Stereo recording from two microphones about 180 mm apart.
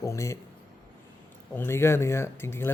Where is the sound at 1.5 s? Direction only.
15° left (ahead or behind).